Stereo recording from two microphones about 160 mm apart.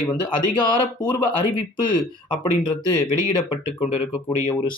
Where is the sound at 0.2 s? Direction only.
30° left (ahead or behind).